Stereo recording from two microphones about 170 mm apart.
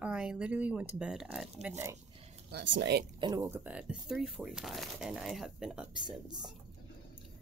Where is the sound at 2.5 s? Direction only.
90° right.